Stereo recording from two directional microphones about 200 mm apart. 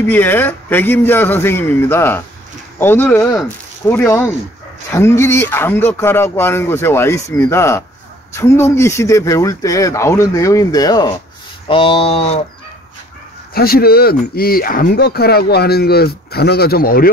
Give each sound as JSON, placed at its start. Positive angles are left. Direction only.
{"t": 0.1, "sound": "speech", "side_deg": 10}
{"t": 11.6, "sound": "a sound", "side_deg": 25}
{"t": 13.5, "sound": "speech", "side_deg": 50}